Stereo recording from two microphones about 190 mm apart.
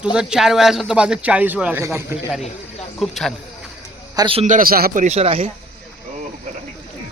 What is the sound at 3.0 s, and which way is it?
Speech, centre (ahead or behind).